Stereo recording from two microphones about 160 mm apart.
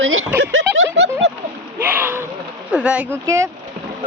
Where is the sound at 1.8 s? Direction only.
10° right (ahead or behind).